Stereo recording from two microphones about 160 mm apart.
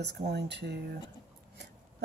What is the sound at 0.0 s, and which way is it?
Speech, 90° right.